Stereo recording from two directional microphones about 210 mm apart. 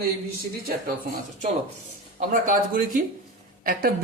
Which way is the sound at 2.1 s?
40° right (ahead or behind).